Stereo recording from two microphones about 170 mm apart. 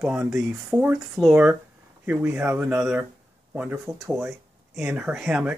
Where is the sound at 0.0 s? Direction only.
5° right (ahead or behind).